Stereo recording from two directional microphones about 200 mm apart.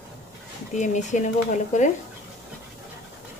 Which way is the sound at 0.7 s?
35° left (ahead or behind).